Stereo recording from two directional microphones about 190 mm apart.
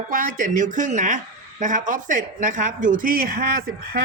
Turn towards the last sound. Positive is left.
turn(degrees=-50)  # may be behind; listen again after turning